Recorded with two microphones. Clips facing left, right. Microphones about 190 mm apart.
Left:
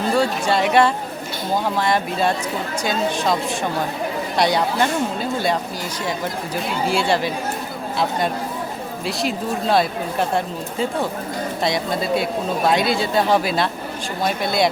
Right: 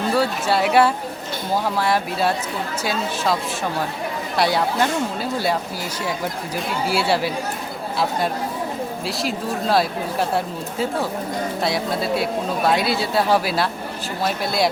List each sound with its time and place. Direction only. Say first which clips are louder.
0.2 s speech: left 1 dB; 5° right (ahead or behind)
4.4 s speech: left 1 dB; 5° right (ahead or behind)
6.8 s speech: left 1 dB; 5° right (ahead or behind)
9.0 s speech: left 4 dB; centre (ahead or behind)